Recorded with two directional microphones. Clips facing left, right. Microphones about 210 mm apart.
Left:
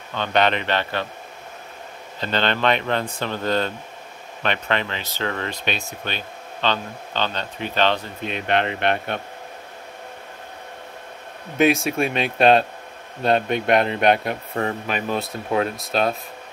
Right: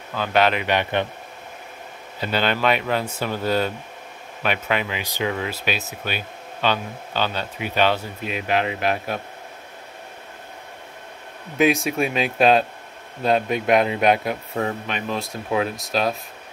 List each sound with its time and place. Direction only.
0.1 s speech: 5° right (ahead or behind)
2.1 s speech: 10° right (ahead or behind)
11.5 s speech: centre (ahead or behind)